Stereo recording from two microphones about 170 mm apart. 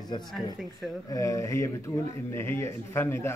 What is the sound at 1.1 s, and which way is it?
Speech, 20° left (ahead or behind).